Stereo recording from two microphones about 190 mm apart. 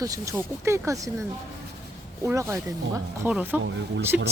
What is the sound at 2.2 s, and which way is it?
Speech, 15° right (ahead or behind).